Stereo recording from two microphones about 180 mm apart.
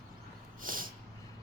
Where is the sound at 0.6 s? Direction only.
50° right (ahead or behind).